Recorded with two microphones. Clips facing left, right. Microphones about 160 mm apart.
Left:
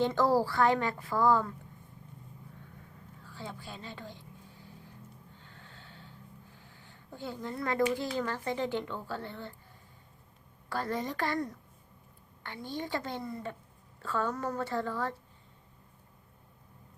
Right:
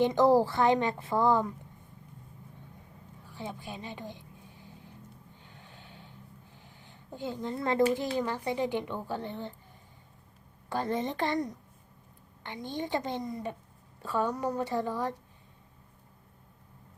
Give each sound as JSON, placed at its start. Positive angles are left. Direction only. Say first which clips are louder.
{"t": 0.0, "sound": "a woman's voice", "louder": "right 4 dB", "side_deg": -20}
{"t": 3.2, "sound": "vehicle", "louder": "right 3 dB", "side_deg": -20}
{"t": 5.4, "sound": "a sound", "louder": "right 1 dB", "side_deg": -15}
{"t": 10.7, "sound": "a woman's voice", "louder": "right 3 dB", "side_deg": -20}